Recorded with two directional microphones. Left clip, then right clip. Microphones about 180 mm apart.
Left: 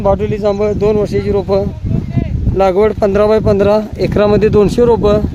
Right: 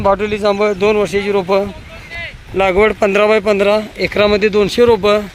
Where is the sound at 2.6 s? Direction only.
25° left (ahead or behind).